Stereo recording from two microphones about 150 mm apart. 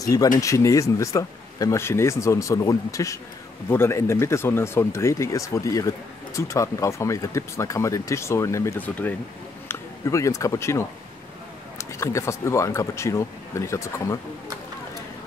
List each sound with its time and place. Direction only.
0.0 s speech: 25° left (ahead or behind)